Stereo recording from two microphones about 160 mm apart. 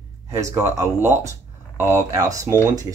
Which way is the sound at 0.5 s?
20° right (ahead or behind).